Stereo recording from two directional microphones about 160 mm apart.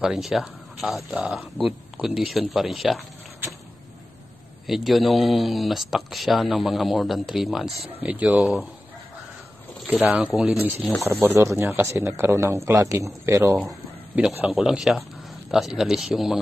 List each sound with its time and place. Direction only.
0.0 s speech: centre (ahead or behind)
4.6 s speech: centre (ahead or behind)
9.8 s speech: 10° right (ahead or behind)
11.0 s a man's voice: 15° right (ahead or behind)
14.4 s speech: 5° right (ahead or behind)